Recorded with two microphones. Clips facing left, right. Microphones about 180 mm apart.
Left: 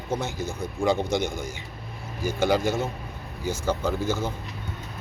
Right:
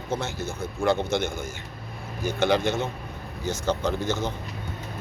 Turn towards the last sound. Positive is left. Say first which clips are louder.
# even
turn(degrees=10)  # may be behind; listen again after turning